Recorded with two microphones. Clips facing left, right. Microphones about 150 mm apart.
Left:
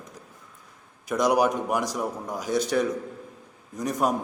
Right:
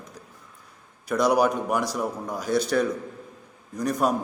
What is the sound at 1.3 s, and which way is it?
A man's voice, 15° left (ahead or behind).